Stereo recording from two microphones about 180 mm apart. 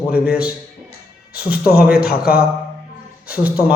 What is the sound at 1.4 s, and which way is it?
Speech, 10° right (ahead or behind).